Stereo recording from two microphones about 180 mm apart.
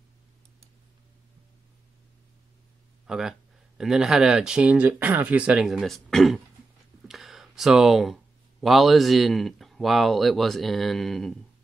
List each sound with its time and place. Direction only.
3.1 s speech: centre (ahead or behind)